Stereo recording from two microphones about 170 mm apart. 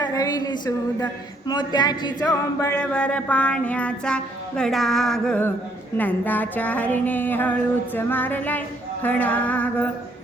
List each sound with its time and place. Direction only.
0.0 s speech: 20° left (ahead or behind)
2.7 s music: 5° left (ahead or behind)